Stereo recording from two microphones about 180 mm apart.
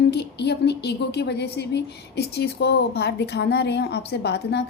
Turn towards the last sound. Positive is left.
turn(degrees=70)  # may be behind; listen again after turning